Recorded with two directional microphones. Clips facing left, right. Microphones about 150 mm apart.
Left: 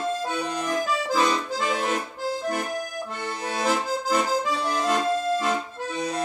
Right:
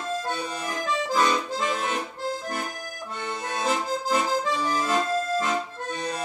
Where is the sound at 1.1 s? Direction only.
Centre (ahead or behind).